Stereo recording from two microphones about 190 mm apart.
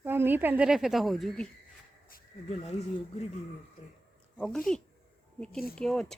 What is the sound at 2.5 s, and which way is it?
Speech, 35° left (ahead or behind).